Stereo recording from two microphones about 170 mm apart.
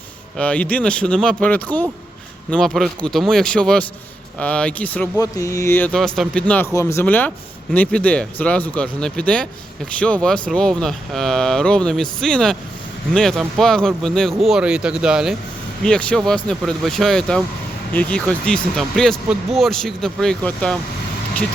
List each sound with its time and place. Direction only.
0.3 s speech: 5° left (ahead or behind)
5.2 s speech: 20° left (ahead or behind); by 20.7 s 5° left (ahead or behind)